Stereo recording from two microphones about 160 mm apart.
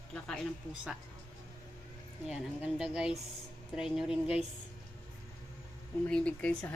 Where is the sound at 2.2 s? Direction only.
5° right (ahead or behind).